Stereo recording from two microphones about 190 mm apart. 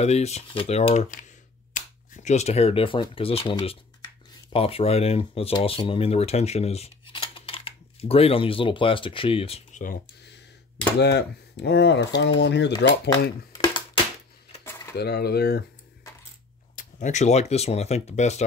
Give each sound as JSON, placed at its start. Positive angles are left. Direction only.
{"t": 0.0, "sound": "speech", "side_deg": 35}
{"t": 11.0, "sound": "speech", "side_deg": 60}
{"t": 13.5, "sound": "a sound", "side_deg": 20}
{"t": 15.0, "sound": "speech", "side_deg": 55}
{"t": 16.7, "sound": "speech", "side_deg": 40}